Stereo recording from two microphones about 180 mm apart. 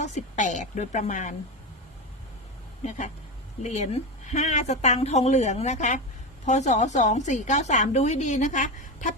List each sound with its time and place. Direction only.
0.0 s a woman's voice: 40° left (ahead or behind)
3.6 s a woman's voice: 40° left (ahead or behind)